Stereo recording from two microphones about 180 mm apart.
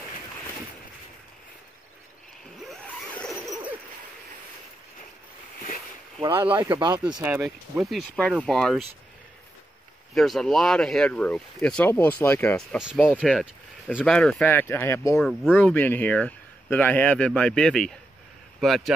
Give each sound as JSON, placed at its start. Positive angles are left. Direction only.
{"t": 2.6, "sound": "zipper", "side_deg": 5}
{"t": 6.4, "sound": "speech", "side_deg": -30}
{"t": 7.2, "sound": "speech", "side_deg": -5}
{"t": 10.1, "sound": "speech", "side_deg": 0}
{"t": 12.7, "sound": "speech", "side_deg": -5}
{"t": 15.1, "sound": "speech", "side_deg": 5}